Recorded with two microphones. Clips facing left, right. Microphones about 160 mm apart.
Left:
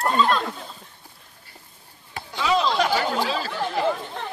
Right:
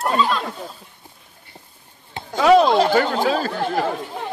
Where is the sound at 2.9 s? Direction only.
50° right (ahead or behind).